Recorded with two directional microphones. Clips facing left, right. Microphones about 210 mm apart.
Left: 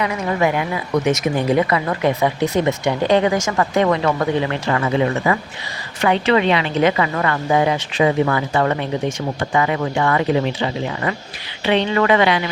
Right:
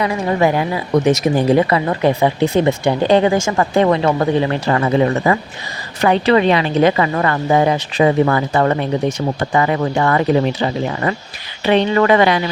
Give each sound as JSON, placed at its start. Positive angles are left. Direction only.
{"t": 0.0, "sound": "speech", "side_deg": -30}